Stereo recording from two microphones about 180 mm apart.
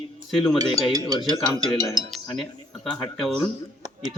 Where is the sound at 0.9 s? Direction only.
20° right (ahead or behind).